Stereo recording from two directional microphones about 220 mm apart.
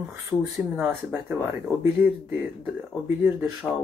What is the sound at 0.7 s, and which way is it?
Speech, 5° right (ahead or behind).